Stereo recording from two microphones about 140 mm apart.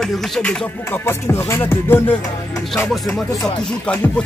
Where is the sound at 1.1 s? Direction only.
15° left (ahead or behind).